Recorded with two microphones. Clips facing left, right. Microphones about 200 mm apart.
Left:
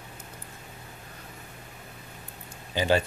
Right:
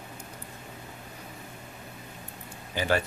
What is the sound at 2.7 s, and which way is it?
Speech, 20° left (ahead or behind).